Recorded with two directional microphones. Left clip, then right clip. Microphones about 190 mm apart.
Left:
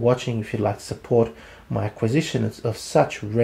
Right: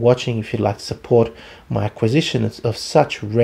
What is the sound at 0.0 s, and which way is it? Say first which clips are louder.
Speech: right 5 dB; 35° right (ahead or behind).